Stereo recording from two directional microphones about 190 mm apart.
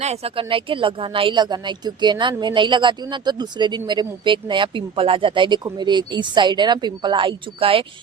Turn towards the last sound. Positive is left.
turn(degrees=-30)  # may be behind; listen again after turning